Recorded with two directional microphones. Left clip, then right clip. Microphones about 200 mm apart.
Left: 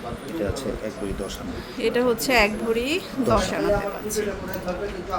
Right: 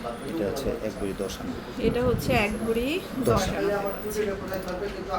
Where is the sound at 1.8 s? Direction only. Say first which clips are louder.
Left 4 dB; 30° left (ahead or behind).